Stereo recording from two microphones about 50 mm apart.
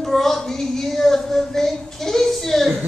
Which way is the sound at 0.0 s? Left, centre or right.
Centre.